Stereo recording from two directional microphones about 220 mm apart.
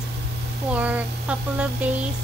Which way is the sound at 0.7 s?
5° right (ahead or behind).